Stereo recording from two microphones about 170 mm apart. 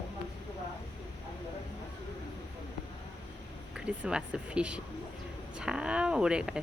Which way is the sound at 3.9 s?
5° right (ahead or behind).